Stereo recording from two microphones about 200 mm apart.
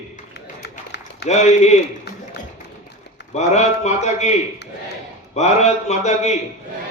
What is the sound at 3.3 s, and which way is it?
A man's voice, 35° left (ahead or behind).